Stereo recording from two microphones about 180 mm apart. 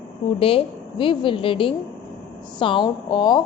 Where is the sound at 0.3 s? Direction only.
30° left (ahead or behind).